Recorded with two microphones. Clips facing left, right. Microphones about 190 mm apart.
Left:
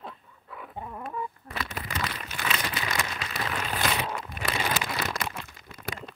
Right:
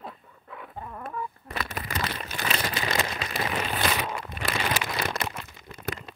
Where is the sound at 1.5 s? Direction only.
45° right (ahead or behind).